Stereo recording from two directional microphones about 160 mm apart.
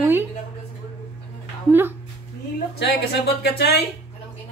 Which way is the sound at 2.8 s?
90° left.